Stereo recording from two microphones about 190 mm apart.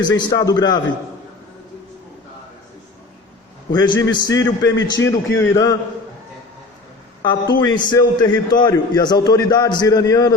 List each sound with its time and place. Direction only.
0.1 s a man's voice: 20° left (ahead or behind)
3.7 s a man's voice: 20° left (ahead or behind)
7.2 s a man's voice: 25° left (ahead or behind)